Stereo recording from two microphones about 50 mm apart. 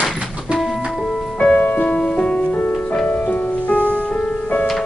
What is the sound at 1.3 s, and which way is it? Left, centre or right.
Music, left.